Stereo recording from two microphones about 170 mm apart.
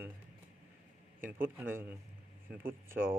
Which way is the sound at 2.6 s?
60° right (ahead or behind).